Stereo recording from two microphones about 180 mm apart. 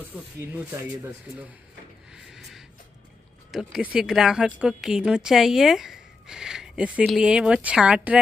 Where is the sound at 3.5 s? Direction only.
5° right (ahead or behind).